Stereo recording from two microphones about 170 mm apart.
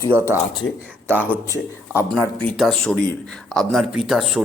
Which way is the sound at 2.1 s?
Centre (ahead or behind).